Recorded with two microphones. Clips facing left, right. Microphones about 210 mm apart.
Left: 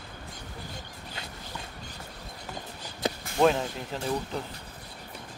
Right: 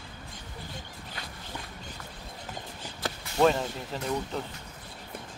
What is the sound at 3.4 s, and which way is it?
Speech, centre (ahead or behind).